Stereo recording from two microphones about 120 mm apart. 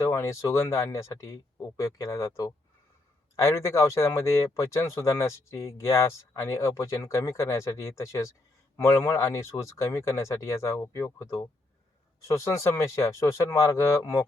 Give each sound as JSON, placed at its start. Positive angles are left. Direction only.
{"t": 0.1, "sound": "speech", "side_deg": 25}